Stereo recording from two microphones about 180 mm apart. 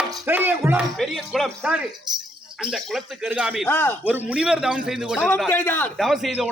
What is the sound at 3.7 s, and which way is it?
Speech, 10° left (ahead or behind).